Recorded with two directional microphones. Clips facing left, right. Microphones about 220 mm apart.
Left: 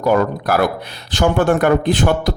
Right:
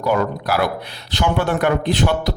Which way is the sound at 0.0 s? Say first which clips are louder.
Left 4 dB; 45° left (ahead or behind).